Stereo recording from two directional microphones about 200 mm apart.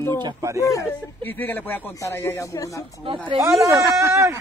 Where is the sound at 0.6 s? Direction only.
15° left (ahead or behind).